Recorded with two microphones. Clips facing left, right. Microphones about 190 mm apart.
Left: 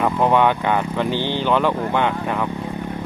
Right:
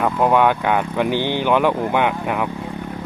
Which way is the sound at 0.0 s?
5° right (ahead or behind).